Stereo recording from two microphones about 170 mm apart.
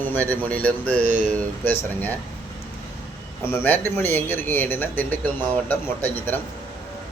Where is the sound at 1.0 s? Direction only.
45° right (ahead or behind).